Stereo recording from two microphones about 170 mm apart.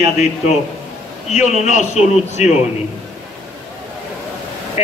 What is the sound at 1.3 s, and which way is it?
A man's voice, 40° left (ahead or behind).